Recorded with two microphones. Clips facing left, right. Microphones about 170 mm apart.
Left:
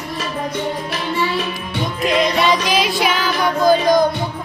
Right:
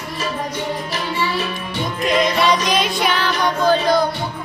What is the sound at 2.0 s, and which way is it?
Music, centre (ahead or behind).